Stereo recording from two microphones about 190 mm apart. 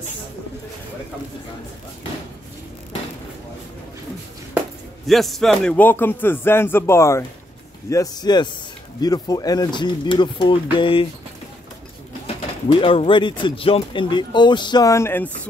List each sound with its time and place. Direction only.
5.0 s speech: centre (ahead or behind); by 11.1 s 30° left (ahead or behind)
12.7 s speech: 30° left (ahead or behind); by 15.2 s 15° left (ahead or behind)